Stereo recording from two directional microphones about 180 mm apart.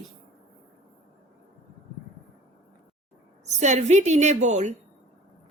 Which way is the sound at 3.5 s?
40° right (ahead or behind).